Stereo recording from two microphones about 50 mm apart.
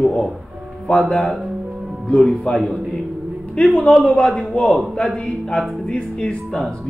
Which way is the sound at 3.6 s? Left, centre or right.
Centre.